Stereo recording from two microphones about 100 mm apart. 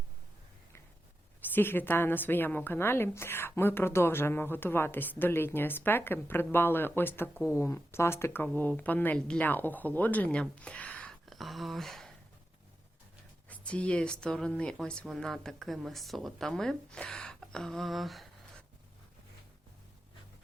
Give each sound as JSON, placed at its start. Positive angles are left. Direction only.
{"t": 1.5, "sound": "a woman's voice", "side_deg": 20}
{"t": 11.3, "sound": "speech", "side_deg": 0}
{"t": 13.5, "sound": "speech", "side_deg": 10}